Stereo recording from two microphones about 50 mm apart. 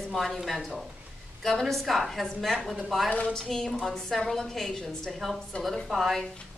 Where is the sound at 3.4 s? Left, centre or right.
Centre.